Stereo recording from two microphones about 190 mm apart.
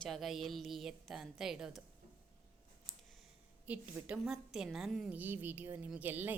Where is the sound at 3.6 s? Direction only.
10° right (ahead or behind).